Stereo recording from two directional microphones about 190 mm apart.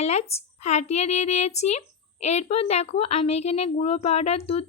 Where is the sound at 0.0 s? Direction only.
35° left (ahead or behind).